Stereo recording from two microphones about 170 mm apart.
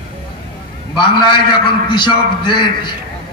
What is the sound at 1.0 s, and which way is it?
A man's voice, 30° left (ahead or behind).